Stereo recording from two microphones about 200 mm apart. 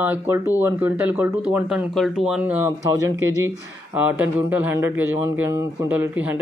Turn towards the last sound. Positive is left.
turn(degrees=-10)  # may be behind; listen again after turning